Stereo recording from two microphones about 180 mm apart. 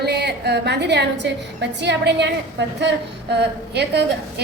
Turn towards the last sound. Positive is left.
turn(degrees=-70)  # may be behind; listen again after turning